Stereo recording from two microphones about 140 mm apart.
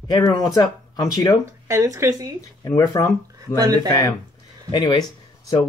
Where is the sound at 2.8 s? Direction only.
25° left (ahead or behind).